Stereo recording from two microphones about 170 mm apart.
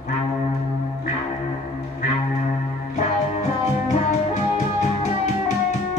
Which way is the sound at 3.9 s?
45° left (ahead or behind).